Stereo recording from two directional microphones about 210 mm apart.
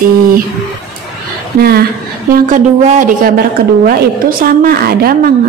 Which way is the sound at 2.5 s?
40° right (ahead or behind).